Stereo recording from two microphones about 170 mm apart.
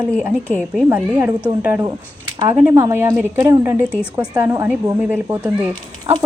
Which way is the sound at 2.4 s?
10° right (ahead or behind).